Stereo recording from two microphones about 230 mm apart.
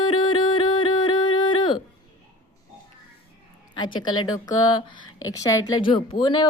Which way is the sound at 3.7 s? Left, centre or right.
Centre.